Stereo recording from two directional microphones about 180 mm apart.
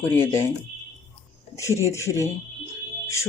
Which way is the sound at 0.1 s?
15° left (ahead or behind).